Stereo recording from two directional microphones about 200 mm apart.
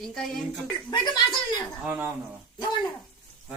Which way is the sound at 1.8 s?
10° right (ahead or behind).